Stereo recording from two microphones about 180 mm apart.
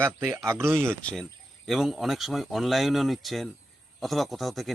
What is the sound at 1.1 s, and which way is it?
Speech, centre (ahead or behind).